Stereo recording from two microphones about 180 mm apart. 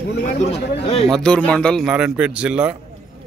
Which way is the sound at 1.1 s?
5° left (ahead or behind).